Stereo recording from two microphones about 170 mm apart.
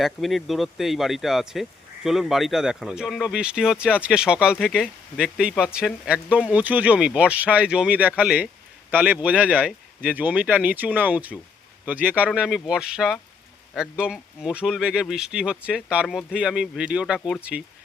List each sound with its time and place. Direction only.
0.0 s speech: centre (ahead or behind)